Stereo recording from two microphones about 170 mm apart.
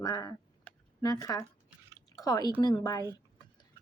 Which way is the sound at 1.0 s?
20° left (ahead or behind).